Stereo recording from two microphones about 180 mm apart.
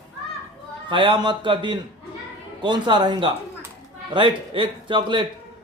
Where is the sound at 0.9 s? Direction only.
25° right (ahead or behind).